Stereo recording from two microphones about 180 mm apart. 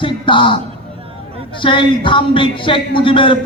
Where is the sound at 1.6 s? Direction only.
25° left (ahead or behind).